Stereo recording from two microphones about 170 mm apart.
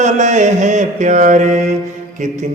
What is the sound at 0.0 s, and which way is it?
Mantra, 45° right (ahead or behind).